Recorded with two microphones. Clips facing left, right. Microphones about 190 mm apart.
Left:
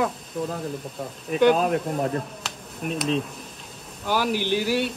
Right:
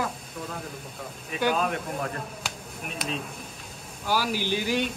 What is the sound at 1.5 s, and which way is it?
Speech, 40° left (ahead or behind).